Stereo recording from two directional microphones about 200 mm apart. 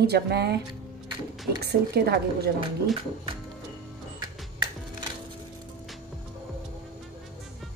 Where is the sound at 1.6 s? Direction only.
55° right (ahead or behind).